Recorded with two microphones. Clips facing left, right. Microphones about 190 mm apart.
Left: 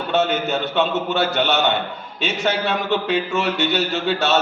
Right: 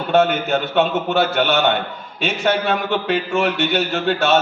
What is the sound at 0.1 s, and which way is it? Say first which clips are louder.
Speech: right 4 dB; 55° right (ahead or behind).